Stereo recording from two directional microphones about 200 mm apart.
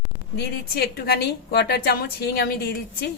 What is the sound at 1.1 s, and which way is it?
Speech, 55° left (ahead or behind).